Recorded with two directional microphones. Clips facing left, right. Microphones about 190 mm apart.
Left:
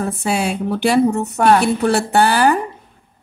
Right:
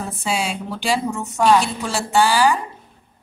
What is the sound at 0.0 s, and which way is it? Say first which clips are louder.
A woman's voice: left 5 dB; 60° left (ahead or behind).